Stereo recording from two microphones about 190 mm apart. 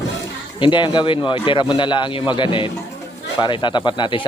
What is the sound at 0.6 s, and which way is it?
Speech, 25° left (ahead or behind).